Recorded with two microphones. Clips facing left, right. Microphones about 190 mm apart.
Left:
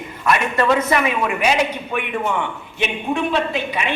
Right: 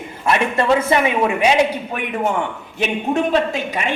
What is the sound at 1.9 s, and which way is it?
A woman's voice, 40° right (ahead or behind).